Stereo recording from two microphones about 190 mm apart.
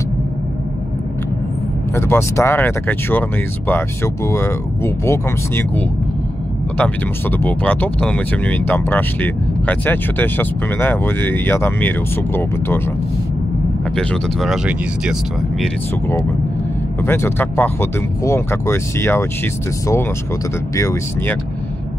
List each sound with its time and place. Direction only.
2.0 s speech: 15° left (ahead or behind)
13.9 s speech: 5° left (ahead or behind)
17.0 s speech: 10° left (ahead or behind)
20.7 s speech: 15° left (ahead or behind)